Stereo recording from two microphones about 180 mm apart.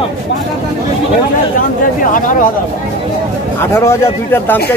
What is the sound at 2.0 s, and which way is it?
Speech, 50° left (ahead or behind).